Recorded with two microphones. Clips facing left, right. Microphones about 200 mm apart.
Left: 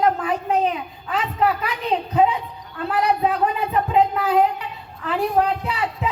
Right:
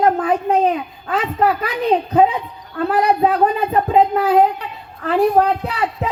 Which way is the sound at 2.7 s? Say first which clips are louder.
Right 5 dB; 40° right (ahead or behind).